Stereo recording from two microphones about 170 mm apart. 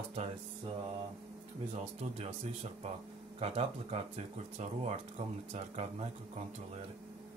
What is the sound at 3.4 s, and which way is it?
Speech, 35° right (ahead or behind).